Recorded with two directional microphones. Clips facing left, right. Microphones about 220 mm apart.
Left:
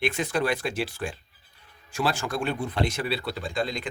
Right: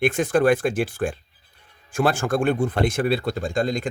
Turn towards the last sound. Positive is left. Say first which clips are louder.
# right 6 dB
turn(degrees=-45)  # may be behind; listen again after turning